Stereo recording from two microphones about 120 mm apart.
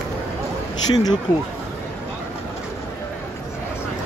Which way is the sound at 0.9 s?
35° left (ahead or behind).